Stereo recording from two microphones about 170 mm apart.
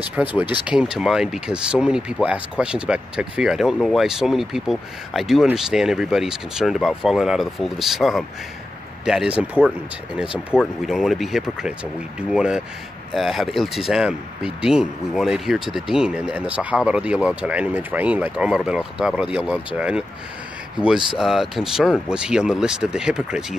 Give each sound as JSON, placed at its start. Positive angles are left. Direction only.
{"t": 0.0, "sound": "speech", "side_deg": -10}